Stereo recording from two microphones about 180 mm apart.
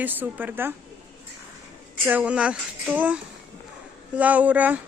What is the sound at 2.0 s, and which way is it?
Speech, 10° right (ahead or behind).